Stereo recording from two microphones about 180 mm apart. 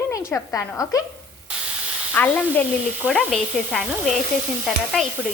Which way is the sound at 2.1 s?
10° left (ahead or behind).